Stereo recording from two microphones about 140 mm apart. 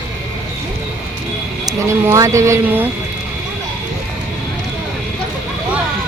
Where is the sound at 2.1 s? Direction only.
20° right (ahead or behind).